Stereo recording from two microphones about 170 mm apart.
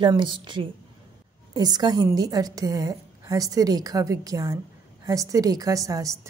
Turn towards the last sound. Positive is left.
turn(degrees=-20)  # may be behind; listen again after turning